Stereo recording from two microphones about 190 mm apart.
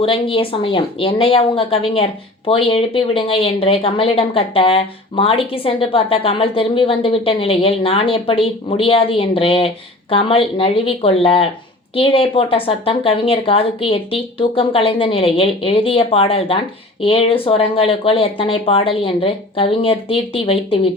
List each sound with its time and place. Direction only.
0.0 s a woman's voice: 30° left (ahead or behind)